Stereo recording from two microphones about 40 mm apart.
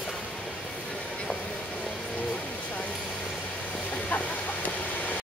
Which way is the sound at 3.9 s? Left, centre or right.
Left.